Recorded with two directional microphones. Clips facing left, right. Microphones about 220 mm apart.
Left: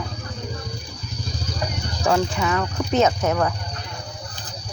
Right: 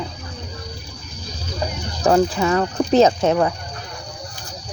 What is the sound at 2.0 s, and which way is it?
Speech, 35° right (ahead or behind).